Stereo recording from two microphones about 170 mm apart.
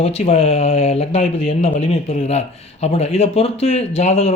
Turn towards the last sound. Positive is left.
turn(degrees=40)  # may be behind; listen again after turning